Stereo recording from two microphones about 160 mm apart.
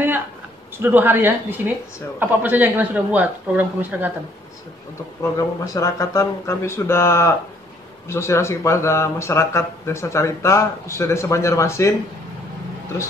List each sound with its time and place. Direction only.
0.7 s speech: 10° right (ahead or behind)
5.2 s speech: 20° left (ahead or behind)